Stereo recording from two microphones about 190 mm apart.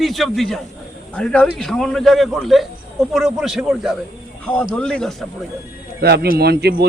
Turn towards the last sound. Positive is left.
turn(degrees=-60)  # may be behind; listen again after turning